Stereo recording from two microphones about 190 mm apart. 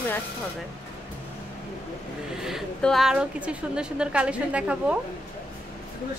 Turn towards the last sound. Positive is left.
turn(degrees=-5)  # may be behind; listen again after turning